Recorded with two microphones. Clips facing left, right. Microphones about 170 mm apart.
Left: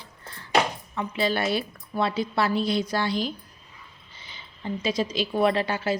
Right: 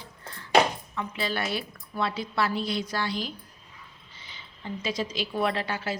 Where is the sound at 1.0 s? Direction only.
25° left (ahead or behind).